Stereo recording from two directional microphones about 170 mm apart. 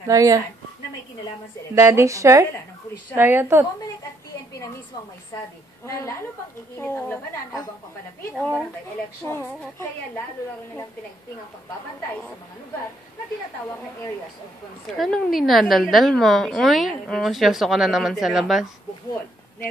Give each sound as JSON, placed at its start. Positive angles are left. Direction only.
{"t": 0.1, "sound": "speech", "side_deg": -20}
{"t": 1.8, "sound": "a woman's voice", "side_deg": -15}
{"t": 5.9, "sound": "a woman's voice", "side_deg": 15}
{"t": 8.4, "sound": "a woman's voice", "side_deg": 10}
{"t": 15.0, "sound": "a woman's voice", "side_deg": 0}